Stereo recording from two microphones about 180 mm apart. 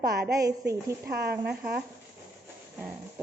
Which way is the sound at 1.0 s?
65° right (ahead or behind).